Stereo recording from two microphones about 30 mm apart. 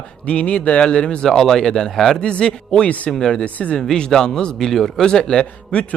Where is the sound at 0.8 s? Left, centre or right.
Left.